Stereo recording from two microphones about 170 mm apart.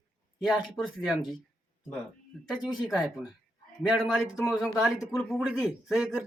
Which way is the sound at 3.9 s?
Centre (ahead or behind).